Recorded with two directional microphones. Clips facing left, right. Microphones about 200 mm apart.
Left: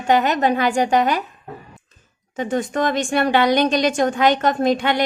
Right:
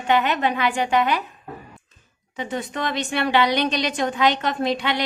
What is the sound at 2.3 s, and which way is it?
A woman's voice, 45° left (ahead or behind).